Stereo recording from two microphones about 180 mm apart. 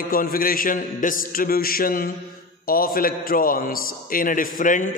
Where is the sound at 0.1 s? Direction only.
55° left (ahead or behind).